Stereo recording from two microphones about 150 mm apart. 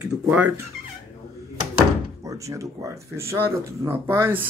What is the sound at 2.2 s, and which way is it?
Speech, 20° right (ahead or behind).